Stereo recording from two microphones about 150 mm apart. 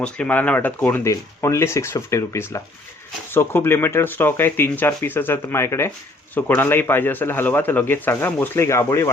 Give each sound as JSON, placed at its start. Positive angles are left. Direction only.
{"t": 0.0, "sound": "a man's voice", "side_deg": 10}